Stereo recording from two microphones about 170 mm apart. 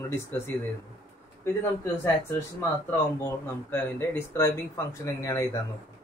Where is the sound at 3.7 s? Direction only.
15° left (ahead or behind).